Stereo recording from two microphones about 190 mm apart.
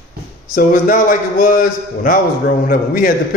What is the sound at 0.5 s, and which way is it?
Speech, 45° left (ahead or behind).